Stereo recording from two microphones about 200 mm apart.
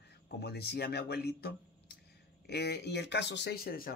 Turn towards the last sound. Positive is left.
turn(degrees=45)  # may be behind; listen again after turning